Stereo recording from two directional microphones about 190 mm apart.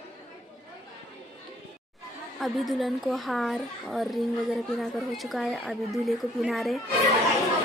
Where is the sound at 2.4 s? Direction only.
Centre (ahead or behind).